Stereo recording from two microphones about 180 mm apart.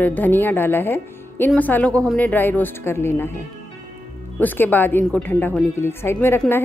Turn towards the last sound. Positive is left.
turn(degrees=10)  # may be behind; listen again after turning